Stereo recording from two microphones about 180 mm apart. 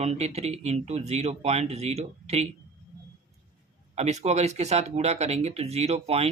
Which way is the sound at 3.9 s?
40° right (ahead or behind).